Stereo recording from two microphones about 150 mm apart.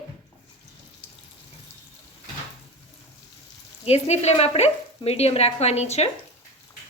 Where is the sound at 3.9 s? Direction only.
45° left (ahead or behind).